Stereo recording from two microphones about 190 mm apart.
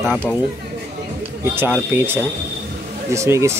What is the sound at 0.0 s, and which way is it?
Speech, centre (ahead or behind).